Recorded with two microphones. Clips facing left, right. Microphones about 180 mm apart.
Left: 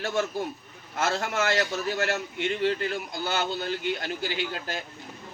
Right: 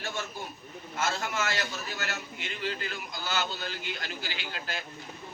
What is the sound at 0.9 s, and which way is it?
A man's voice, 70° left (ahead or behind).